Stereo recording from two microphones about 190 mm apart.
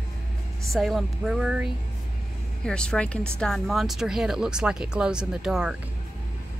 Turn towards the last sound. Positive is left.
turn(degrees=-5)  # may be behind; listen again after turning